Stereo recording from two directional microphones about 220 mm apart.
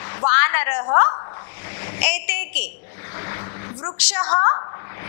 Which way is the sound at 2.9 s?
20° left (ahead or behind).